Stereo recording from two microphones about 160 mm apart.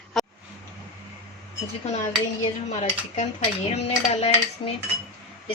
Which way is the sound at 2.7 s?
45° left (ahead or behind).